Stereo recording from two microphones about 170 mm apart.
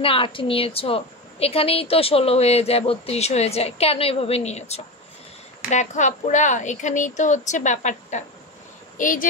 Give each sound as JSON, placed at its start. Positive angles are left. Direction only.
{"t": 0.0, "sound": "a woman's voice", "side_deg": 30}